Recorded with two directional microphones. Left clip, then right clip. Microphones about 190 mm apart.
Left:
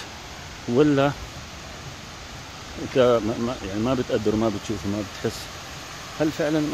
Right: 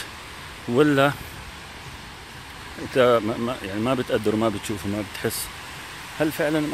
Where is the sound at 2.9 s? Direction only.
Centre (ahead or behind).